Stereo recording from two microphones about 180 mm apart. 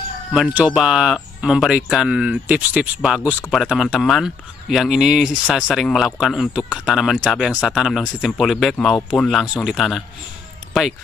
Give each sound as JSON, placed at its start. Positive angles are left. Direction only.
{"t": 0.6, "sound": "speech", "side_deg": -5}
{"t": 3.3, "sound": "speech", "side_deg": 5}